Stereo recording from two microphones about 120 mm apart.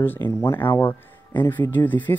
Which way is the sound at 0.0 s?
20° left (ahead or behind).